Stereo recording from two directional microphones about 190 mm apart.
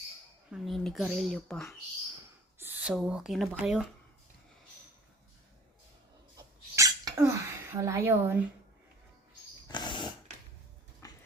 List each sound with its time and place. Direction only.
0.5 s speech: centre (ahead or behind)
2.6 s speech: 10° right (ahead or behind)
6.3 s sneeze: 20° right (ahead or behind)
9.6 s dog: 25° left (ahead or behind)
11.0 s a sound: 15° left (ahead or behind)